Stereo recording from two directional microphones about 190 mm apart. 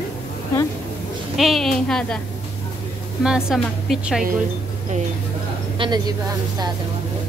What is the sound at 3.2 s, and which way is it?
A woman's voice, 5° right (ahead or behind).